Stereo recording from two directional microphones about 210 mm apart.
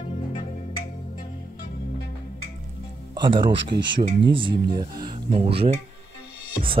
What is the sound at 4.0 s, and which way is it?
Speech, 25° right (ahead or behind).